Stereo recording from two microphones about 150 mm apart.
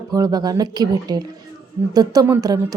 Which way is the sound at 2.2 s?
20° right (ahead or behind).